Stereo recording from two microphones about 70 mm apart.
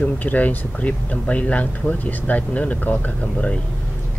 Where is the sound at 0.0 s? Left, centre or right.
Left.